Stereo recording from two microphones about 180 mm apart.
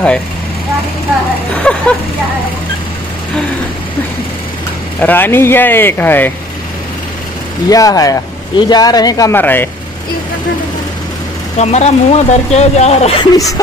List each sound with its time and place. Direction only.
1.6 s speech: 5° left (ahead or behind)
5.0 s speech: 10° left (ahead or behind)
7.7 s a man's voice: 20° left (ahead or behind)
11.5 s speech: 40° left (ahead or behind)